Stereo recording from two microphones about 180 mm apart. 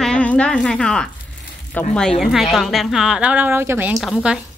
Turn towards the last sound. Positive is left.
turn(degrees=0)  # may be behind; listen again after turning